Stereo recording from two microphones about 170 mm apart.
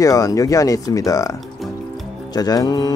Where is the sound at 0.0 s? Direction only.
20° left (ahead or behind).